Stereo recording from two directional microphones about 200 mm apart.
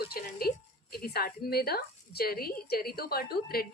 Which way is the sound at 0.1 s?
50° left (ahead or behind).